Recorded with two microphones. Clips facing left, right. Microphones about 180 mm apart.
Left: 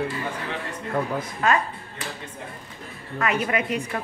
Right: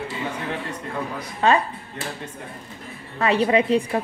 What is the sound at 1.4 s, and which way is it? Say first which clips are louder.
Speech: right 4 dB; 30° right (ahead or behind).